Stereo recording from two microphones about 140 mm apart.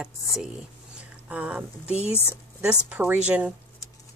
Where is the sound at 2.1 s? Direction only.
15° left (ahead or behind).